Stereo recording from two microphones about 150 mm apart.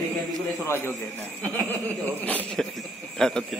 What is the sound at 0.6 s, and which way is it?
Speech, 15° left (ahead or behind).